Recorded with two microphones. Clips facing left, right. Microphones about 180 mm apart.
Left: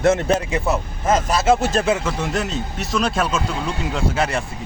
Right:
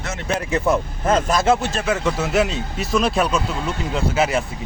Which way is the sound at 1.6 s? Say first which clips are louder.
Left 4 dB; 40° left (ahead or behind).